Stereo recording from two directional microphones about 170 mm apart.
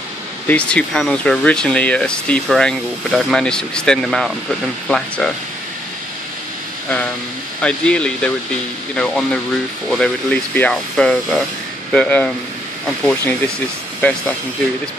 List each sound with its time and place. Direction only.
0.5 s speech: 5° left (ahead or behind)
7.6 s speech: 5° left (ahead or behind)